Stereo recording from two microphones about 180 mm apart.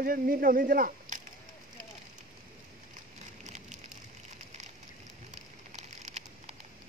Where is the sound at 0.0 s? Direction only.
50° right (ahead or behind).